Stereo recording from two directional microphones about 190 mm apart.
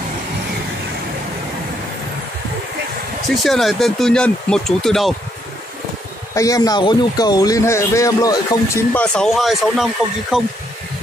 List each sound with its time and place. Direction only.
3.3 s speech: centre (ahead or behind)
6.3 s speech: 20° left (ahead or behind)
8.9 s speech: 5° left (ahead or behind)